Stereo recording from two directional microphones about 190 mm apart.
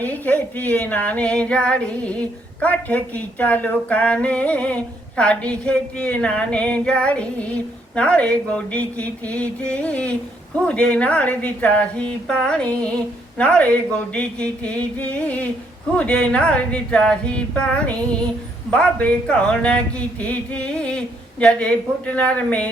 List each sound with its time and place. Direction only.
0.0 s a man's voice: 10° left (ahead or behind)